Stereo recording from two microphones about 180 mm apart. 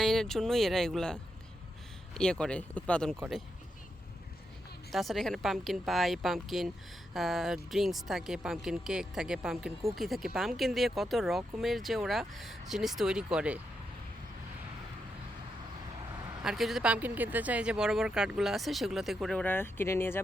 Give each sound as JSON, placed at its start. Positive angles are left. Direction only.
{"t": 0.0, "sound": "speech", "side_deg": 0}
{"t": 4.9, "sound": "speech", "side_deg": 0}
{"t": 16.4, "sound": "speech", "side_deg": 0}